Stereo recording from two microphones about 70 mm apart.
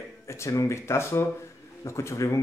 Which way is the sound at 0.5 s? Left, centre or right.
Left.